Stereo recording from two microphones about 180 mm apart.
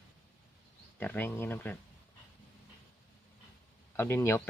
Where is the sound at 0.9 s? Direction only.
10° left (ahead or behind).